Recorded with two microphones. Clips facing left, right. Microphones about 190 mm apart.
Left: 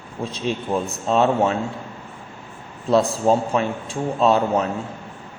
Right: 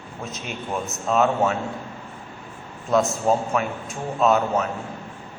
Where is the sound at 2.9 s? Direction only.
30° left (ahead or behind).